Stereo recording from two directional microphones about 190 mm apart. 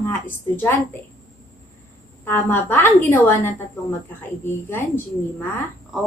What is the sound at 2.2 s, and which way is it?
A woman's voice, 10° left (ahead or behind).